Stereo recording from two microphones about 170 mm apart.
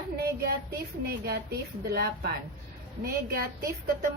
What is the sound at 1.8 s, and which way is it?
A woman's voice, 65° right (ahead or behind).